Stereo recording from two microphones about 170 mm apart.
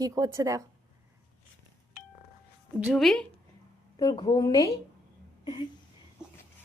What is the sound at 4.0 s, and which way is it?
Speech, 25° left (ahead or behind).